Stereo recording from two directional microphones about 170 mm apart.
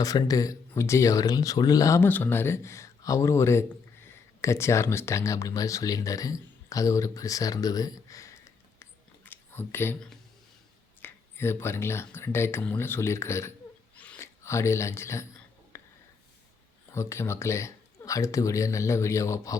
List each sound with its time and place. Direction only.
0.0 s speech: 20° left (ahead or behind)
15.7 s a sound: 15° left (ahead or behind)
16.9 s speech: 15° left (ahead or behind)